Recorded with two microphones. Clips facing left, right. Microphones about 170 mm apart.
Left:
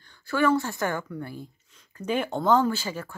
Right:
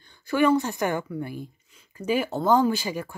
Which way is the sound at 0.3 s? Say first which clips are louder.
Right 2 dB; 15° right (ahead or behind).